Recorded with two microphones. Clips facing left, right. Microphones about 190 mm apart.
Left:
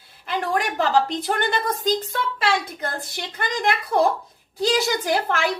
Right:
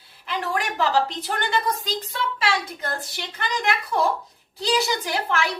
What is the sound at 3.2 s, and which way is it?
A woman's voice, 50° left (ahead or behind).